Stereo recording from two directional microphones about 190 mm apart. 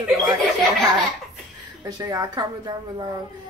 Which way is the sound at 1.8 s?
20° right (ahead or behind).